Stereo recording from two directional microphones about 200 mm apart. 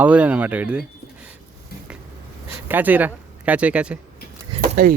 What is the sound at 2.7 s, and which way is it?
Speech, 10° right (ahead or behind).